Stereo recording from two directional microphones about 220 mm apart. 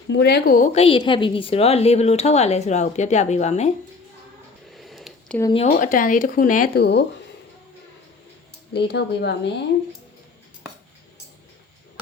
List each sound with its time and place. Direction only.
0.1 s a woman's voice: 50° left (ahead or behind); by 3.7 s 30° left (ahead or behind)
4.7 s a sound: centre (ahead or behind)
5.4 s speech: 25° left (ahead or behind); by 7.0 s 50° left (ahead or behind)
8.7 s speech: 50° left (ahead or behind)